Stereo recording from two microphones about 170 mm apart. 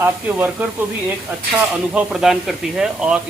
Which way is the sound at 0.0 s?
10° right (ahead or behind).